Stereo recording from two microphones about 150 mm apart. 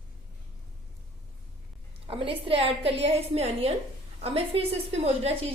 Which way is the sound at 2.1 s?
40° right (ahead or behind).